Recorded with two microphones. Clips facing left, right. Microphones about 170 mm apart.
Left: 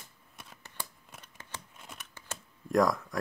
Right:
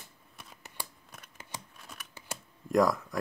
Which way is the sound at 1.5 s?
15° right (ahead or behind).